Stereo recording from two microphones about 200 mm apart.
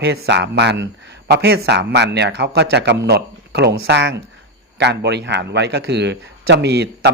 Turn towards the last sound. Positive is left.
turn(degrees=-55)  # may be behind; listen again after turning